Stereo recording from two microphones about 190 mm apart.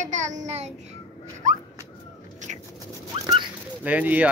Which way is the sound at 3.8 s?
10° right (ahead or behind).